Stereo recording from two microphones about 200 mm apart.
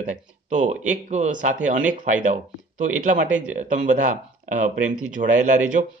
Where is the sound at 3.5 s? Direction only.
40° right (ahead or behind).